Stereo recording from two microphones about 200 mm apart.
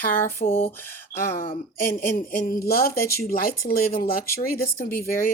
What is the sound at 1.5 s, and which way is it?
Speech, 45° left (ahead or behind).